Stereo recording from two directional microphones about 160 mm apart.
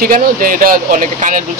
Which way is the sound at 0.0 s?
65° right (ahead or behind).